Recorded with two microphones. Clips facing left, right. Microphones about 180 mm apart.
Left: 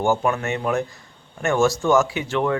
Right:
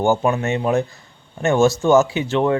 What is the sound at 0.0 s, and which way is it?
Speech, 25° right (ahead or behind).